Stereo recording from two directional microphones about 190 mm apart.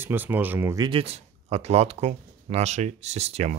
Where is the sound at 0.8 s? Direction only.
30° right (ahead or behind).